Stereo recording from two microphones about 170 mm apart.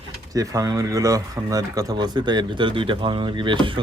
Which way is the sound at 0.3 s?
20° right (ahead or behind).